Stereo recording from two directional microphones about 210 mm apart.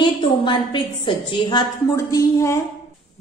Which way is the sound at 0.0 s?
25° left (ahead or behind).